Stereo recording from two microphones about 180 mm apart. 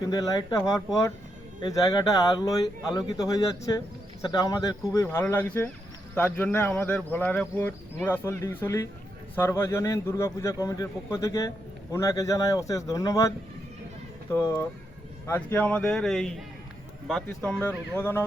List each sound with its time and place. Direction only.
0.0 s speech: 20° left (ahead or behind)
1.6 s a man's voice: 20° left (ahead or behind)